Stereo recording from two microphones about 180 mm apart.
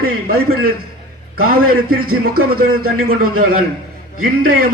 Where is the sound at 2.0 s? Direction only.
55° right (ahead or behind).